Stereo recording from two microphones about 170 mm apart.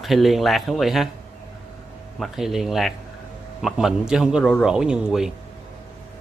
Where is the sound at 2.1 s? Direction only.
Centre (ahead or behind).